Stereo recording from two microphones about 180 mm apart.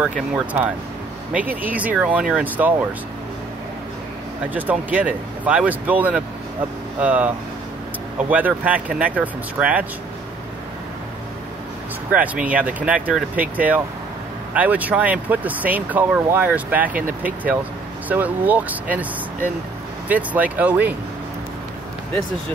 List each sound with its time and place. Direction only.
1.3 s speech: 10° right (ahead or behind)
4.6 s speech: 10° right (ahead or behind)
12.1 s speech: 10° right (ahead or behind)